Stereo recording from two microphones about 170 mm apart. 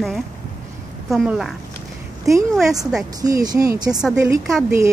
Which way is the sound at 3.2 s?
20° right (ahead or behind).